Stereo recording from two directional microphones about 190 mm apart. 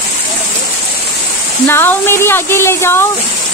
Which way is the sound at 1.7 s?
10° left (ahead or behind).